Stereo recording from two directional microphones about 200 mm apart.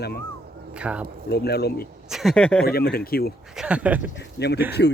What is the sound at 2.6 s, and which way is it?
Speech, 50° left (ahead or behind).